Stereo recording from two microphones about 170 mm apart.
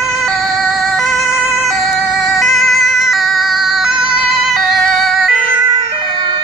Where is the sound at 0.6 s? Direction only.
Centre (ahead or behind).